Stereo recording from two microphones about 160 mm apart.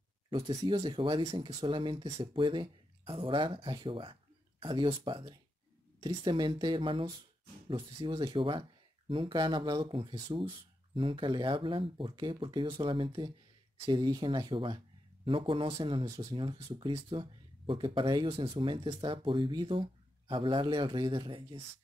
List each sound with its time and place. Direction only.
0.3 s speech: 30° right (ahead or behind)